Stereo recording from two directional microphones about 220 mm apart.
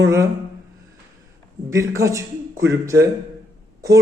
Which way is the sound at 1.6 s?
15° right (ahead or behind).